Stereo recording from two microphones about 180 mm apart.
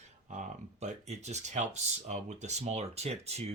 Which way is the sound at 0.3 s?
40° right (ahead or behind).